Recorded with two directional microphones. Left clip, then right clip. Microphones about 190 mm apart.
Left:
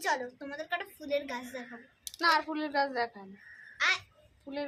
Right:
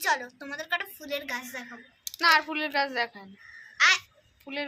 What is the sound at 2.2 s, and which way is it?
A woman's voice, 15° right (ahead or behind).